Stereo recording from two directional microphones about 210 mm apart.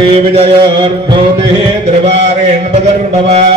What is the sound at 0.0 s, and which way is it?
Mantra, 25° right (ahead or behind).